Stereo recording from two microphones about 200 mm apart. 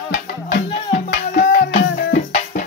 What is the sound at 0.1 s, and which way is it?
Music, 40° left (ahead or behind).